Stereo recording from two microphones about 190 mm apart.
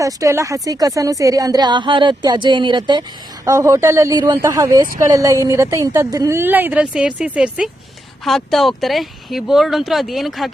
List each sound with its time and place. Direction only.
0.0 s a woman's voice: 15° right (ahead or behind); by 10.5 s centre (ahead or behind)